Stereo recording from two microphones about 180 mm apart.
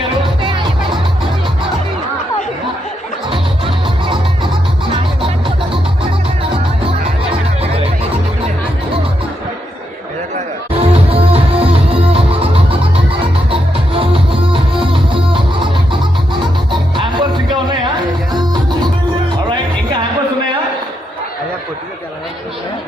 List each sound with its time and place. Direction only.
3.8 s music: 30° right (ahead or behind)
10.3 s music: 35° right (ahead or behind)
13.5 s music: 30° right (ahead or behind)